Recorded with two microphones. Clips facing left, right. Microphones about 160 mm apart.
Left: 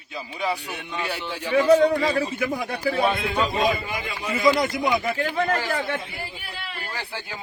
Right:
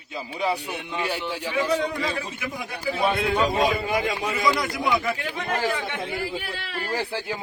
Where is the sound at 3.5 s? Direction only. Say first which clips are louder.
Right 1 dB; 50° right (ahead or behind).